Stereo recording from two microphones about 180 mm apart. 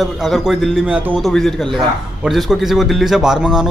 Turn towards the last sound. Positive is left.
turn(degrees=-5)  # may be behind; listen again after turning